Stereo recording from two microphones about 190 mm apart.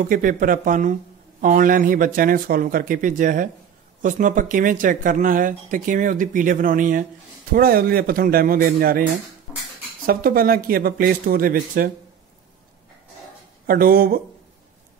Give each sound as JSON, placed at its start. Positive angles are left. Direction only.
{"t": 0.1, "sound": "speech", "side_deg": -45}
{"t": 10.0, "sound": "speech", "side_deg": -50}
{"t": 13.7, "sound": "speech", "side_deg": -50}